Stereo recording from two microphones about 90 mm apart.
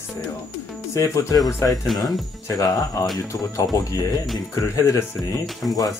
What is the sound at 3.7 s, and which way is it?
Speech, 35° left (ahead or behind).